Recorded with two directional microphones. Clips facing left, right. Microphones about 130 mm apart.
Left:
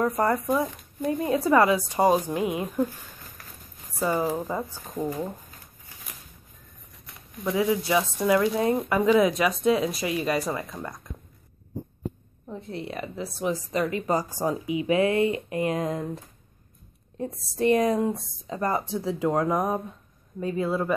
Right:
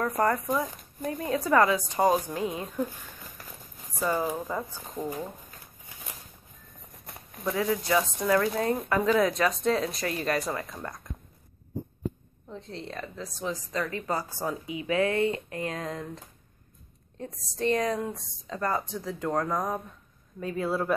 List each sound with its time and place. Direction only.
0.2 s speech: 15° left (ahead or behind)
4.0 s speech: 15° left (ahead or behind)
7.4 s speech: 10° left (ahead or behind)
12.7 s speech: 10° left (ahead or behind)
17.6 s speech: 10° left (ahead or behind)
20.3 s speech: centre (ahead or behind)